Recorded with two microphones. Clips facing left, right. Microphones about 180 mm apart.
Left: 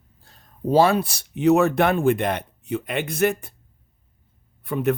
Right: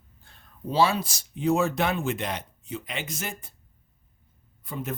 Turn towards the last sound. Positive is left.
turn(degrees=65)  # may be behind; listen again after turning